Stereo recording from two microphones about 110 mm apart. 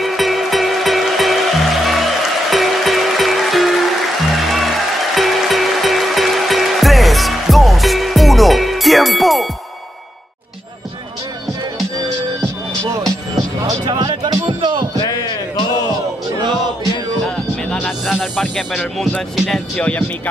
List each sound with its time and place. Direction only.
0.0 s music: centre (ahead or behind)
13.8 s music: 45° right (ahead or behind)
17.6 s music: centre (ahead or behind)
18.7 s speech: 5° left (ahead or behind)